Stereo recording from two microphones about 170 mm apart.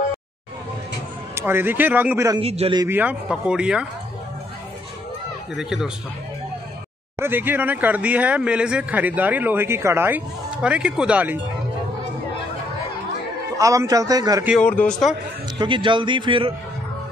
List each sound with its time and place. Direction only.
1.3 s speech: 15° right (ahead or behind)
2.4 s a man's voice: 35° right (ahead or behind)
2.8 s speech: 10° right (ahead or behind)
5.5 s speech: centre (ahead or behind)
7.2 s speech: 10° right (ahead or behind)
13.6 s a man's voice: 20° right (ahead or behind)
14.6 s a man's voice: 10° left (ahead or behind)
15.6 s a man's voice: 30° right (ahead or behind)